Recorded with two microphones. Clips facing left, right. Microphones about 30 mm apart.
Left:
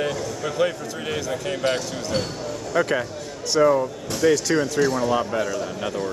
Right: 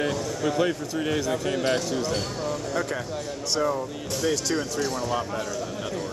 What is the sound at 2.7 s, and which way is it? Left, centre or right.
Speech, left.